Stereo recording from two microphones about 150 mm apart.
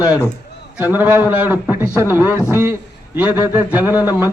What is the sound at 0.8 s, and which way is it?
Speech, 10° right (ahead or behind).